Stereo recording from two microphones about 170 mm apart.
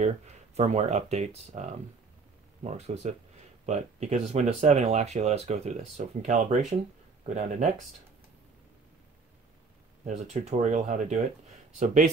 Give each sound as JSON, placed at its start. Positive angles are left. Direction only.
{"t": 0.6, "sound": "speech", "side_deg": -40}
{"t": 10.0, "sound": "speech", "side_deg": -45}